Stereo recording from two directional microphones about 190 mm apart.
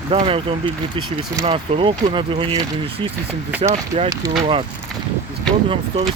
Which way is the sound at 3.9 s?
30° right (ahead or behind).